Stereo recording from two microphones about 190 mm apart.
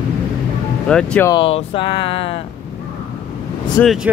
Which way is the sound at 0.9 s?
5° left (ahead or behind).